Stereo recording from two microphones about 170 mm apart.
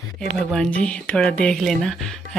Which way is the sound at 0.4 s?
Centre (ahead or behind).